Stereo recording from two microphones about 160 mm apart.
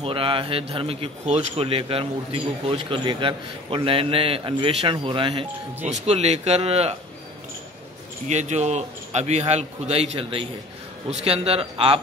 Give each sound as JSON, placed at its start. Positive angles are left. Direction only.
{"t": 0.0, "sound": "speech", "side_deg": -35}
{"t": 8.3, "sound": "a man's voice", "side_deg": -45}